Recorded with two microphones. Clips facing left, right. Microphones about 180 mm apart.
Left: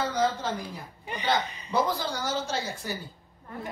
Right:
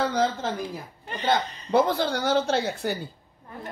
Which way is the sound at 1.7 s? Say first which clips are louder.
Right 6 dB; 60° right (ahead or behind).